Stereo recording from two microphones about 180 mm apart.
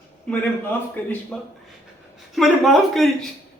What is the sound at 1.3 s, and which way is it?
A man's voice, 5° left (ahead or behind).